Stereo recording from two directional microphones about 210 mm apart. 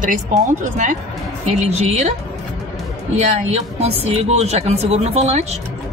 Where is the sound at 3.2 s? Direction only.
30° right (ahead or behind).